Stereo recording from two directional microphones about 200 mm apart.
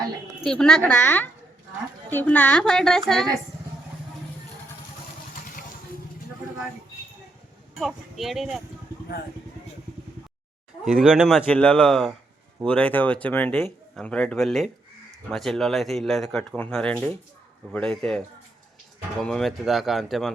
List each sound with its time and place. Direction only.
0.4 s speech: 5° left (ahead or behind)
7.8 s speech: centre (ahead or behind)
10.8 s speech: 5° right (ahead or behind)
11.4 s speech: 5° left (ahead or behind)
19.2 s speech: 5° left (ahead or behind)